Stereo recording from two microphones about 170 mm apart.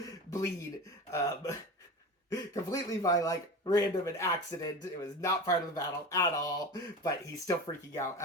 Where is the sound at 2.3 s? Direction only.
20° left (ahead or behind).